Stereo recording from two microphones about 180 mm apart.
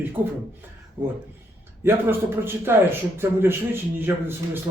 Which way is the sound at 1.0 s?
10° right (ahead or behind).